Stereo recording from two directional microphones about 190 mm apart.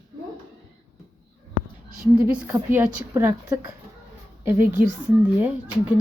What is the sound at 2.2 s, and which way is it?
A woman's voice, 10° right (ahead or behind).